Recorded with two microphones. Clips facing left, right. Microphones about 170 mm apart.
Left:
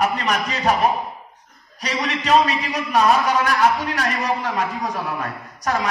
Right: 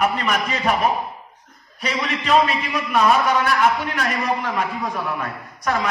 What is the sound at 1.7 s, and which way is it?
A man's voice, 40° left (ahead or behind).